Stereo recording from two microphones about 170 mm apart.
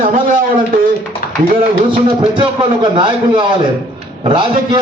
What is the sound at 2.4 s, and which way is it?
A man's voice, 30° right (ahead or behind).